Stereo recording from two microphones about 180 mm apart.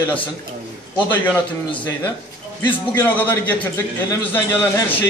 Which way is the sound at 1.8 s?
20° left (ahead or behind).